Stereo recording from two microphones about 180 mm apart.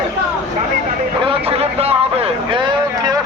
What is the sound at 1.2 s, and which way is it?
Vehicle, 30° right (ahead or behind).